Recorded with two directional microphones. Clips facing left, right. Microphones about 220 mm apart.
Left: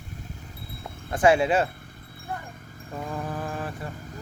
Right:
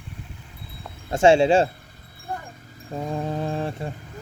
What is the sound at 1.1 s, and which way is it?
Speech, 25° right (ahead or behind).